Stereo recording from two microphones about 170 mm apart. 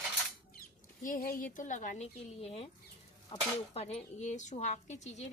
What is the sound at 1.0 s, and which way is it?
A woman's voice, 55° left (ahead or behind).